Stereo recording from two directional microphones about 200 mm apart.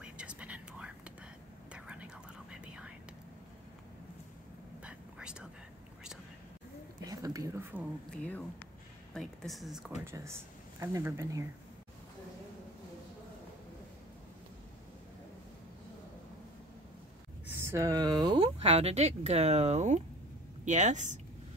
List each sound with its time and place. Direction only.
0.0 s whispering: 5° right (ahead or behind)
4.8 s whispering: 5° right (ahead or behind)
7.1 s speech: 20° right (ahead or behind)
8.1 s speech: 5° left (ahead or behind)
10.1 s speech: 15° right (ahead or behind)
17.6 s speech: 15° right (ahead or behind); by 21.2 s 35° right (ahead or behind)